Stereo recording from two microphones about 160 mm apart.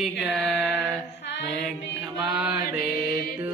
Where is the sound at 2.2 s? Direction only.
10° right (ahead or behind).